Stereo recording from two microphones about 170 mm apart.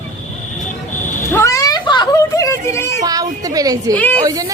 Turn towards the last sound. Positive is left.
turn(degrees=-20)  # may be behind; listen again after turning